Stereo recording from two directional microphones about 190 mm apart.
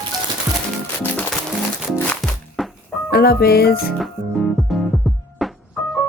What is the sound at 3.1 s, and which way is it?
Speech, 55° left (ahead or behind).